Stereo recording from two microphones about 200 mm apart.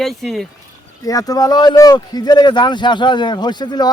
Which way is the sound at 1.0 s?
20° left (ahead or behind).